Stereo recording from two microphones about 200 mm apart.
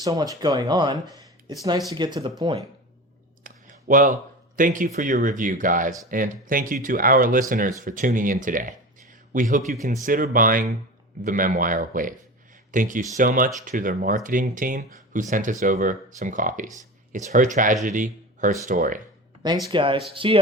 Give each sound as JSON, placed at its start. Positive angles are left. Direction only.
{"t": 0.0, "sound": "speech", "side_deg": -20}
{"t": 3.4, "sound": "a sound", "side_deg": -40}
{"t": 4.5, "sound": "speech", "side_deg": -40}
{"t": 19.7, "sound": "speech", "side_deg": -25}